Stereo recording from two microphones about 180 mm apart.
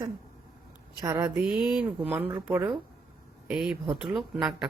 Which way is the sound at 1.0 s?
15° right (ahead or behind).